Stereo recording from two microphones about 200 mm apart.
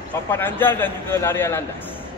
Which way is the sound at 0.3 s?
10° left (ahead or behind).